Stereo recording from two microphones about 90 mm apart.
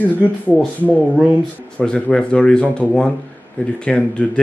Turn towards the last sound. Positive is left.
turn(degrees=15)  # may be behind; listen again after turning